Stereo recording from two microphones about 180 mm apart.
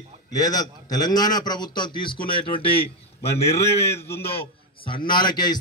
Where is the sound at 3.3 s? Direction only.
15° left (ahead or behind).